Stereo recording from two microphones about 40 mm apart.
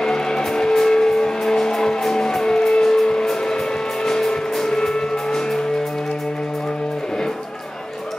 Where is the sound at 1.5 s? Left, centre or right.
Centre.